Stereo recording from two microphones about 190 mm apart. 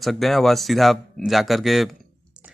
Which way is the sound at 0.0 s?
Centre (ahead or behind).